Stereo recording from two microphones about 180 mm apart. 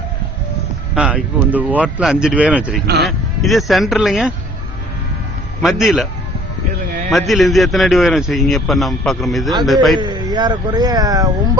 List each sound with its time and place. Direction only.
0.9 s speech: 5° right (ahead or behind)
2.8 s speech: 65° right (ahead or behind)
3.1 s a man's voice: centre (ahead or behind)
5.6 s a man's voice: centre (ahead or behind)
7.1 s a man's voice: centre (ahead or behind)
10.0 s speech: 25° right (ahead or behind)